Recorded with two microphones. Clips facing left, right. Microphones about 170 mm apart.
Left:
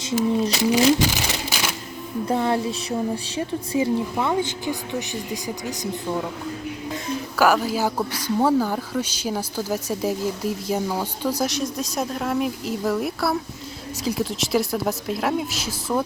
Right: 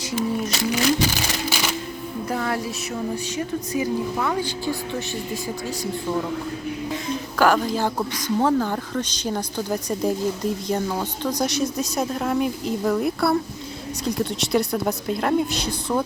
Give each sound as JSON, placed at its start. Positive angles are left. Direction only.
{"t": 0.0, "sound": "a woman's voice", "side_deg": 25}
{"t": 7.3, "sound": "speech", "side_deg": 5}